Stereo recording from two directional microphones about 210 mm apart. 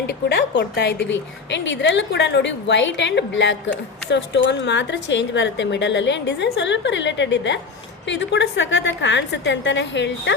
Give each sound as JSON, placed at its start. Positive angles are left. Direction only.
{"t": 0.1, "sound": "a woman's voice", "side_deg": 55}